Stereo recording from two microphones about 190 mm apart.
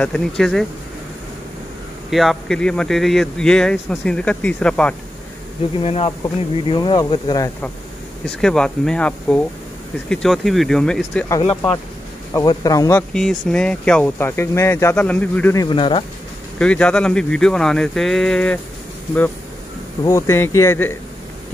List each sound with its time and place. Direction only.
0.0 s speech: 5° left (ahead or behind)
2.0 s speech: centre (ahead or behind)
5.8 s speech: 30° left (ahead or behind)
8.4 s speech: 5° left (ahead or behind)
12.3 s speech: 15° left (ahead or behind)
13.1 s speech: centre (ahead or behind)
15.6 s speech: 25° left (ahead or behind)
16.5 s speech: 5° left (ahead or behind)
20.1 s speech: 15° left (ahead or behind)